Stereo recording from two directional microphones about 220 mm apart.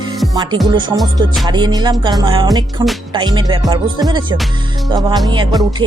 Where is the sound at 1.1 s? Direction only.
20° right (ahead or behind).